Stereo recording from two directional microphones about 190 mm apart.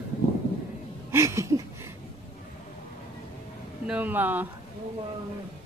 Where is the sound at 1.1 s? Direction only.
15° right (ahead or behind).